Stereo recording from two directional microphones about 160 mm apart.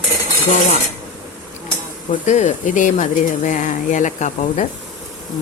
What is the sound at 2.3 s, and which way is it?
Speech, 50° left (ahead or behind).